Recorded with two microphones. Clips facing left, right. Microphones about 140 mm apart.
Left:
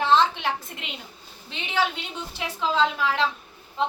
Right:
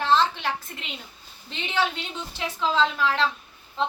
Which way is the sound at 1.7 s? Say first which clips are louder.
Left 1 dB; 10° left (ahead or behind).